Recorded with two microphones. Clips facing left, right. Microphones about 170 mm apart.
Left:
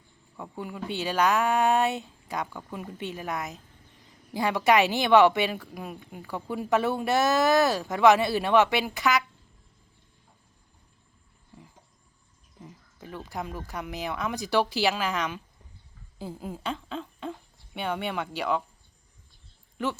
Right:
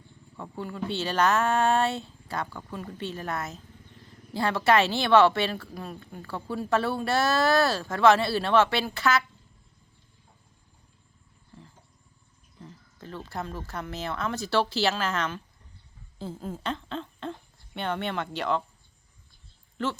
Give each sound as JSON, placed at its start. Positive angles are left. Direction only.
{"t": 0.3, "sound": "speech", "side_deg": 10}
{"t": 11.5, "sound": "a sound", "side_deg": 15}
{"t": 12.5, "sound": "speech", "side_deg": 10}
{"t": 16.1, "sound": "a sound", "side_deg": 10}
{"t": 17.7, "sound": "speech", "side_deg": 10}
{"t": 19.7, "sound": "a woman's voice", "side_deg": 15}